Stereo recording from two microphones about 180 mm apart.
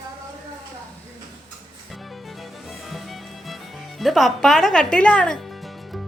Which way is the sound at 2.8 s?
Centre (ahead or behind).